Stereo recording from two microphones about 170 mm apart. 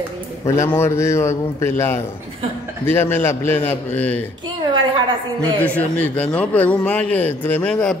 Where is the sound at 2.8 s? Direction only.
15° left (ahead or behind).